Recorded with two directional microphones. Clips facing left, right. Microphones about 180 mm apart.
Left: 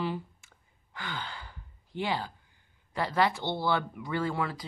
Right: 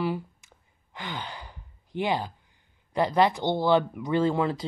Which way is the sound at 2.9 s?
20° right (ahead or behind).